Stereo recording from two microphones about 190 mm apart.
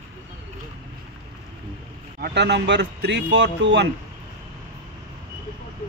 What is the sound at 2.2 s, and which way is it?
Speech, 60° right (ahead or behind).